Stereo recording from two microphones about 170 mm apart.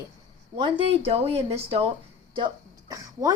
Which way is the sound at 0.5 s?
30° right (ahead or behind).